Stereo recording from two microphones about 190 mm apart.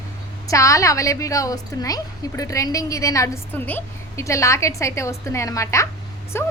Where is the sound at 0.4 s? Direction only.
15° left (ahead or behind).